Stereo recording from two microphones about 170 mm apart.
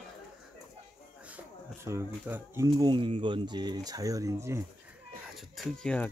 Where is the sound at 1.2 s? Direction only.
10° right (ahead or behind).